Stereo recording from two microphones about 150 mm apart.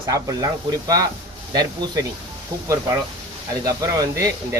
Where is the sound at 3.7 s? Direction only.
20° right (ahead or behind).